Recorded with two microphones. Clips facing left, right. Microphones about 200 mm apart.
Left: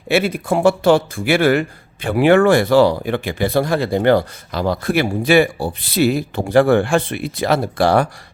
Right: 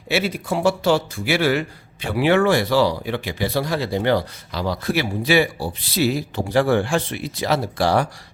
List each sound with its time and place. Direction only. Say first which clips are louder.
0.1 s a man's voice: left 5 dB; 55° left (ahead or behind)